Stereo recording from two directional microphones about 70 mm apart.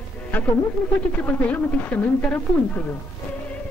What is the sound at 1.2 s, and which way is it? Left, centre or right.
Speech, left.